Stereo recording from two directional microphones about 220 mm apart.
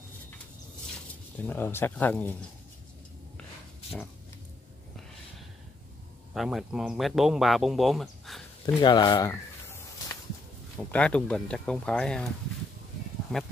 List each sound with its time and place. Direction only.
1.5 s speech: 10° left (ahead or behind)
6.3 s speech: centre (ahead or behind)
8.8 s a sound: 20° left (ahead or behind)
10.8 s speech: 5° left (ahead or behind)
13.3 s speech: 5° left (ahead or behind)